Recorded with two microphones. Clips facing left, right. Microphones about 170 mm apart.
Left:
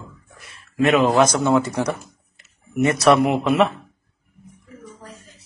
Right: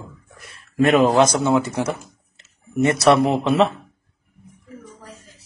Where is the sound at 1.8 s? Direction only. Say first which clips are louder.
Even; 25° right (ahead or behind).